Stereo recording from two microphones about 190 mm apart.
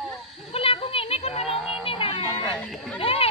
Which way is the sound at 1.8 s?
25° left (ahead or behind).